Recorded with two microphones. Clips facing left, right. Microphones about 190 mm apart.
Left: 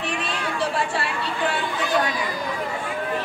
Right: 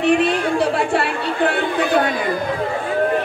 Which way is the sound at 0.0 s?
60° right (ahead or behind).